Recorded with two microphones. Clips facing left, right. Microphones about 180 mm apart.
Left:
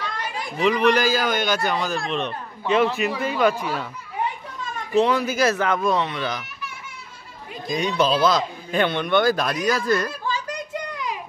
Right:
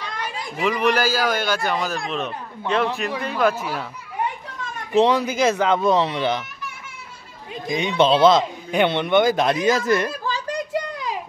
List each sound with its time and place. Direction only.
0.6 s a man's voice: 5° right (ahead or behind)
4.9 s speech: 20° right (ahead or behind)
7.6 s speech: 25° right (ahead or behind)
10.2 s a sound: 35° right (ahead or behind)